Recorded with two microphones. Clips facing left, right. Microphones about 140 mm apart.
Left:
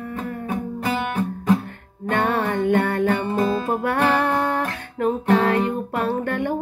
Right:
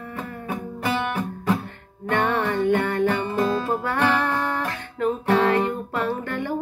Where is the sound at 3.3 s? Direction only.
25° left (ahead or behind).